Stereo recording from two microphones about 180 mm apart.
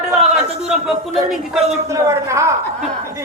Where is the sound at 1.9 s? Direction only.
15° right (ahead or behind).